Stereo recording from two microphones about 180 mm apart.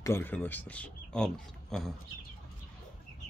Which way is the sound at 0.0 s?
10° left (ahead or behind).